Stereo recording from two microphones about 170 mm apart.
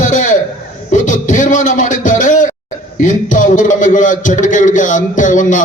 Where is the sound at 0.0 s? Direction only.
50° left (ahead or behind).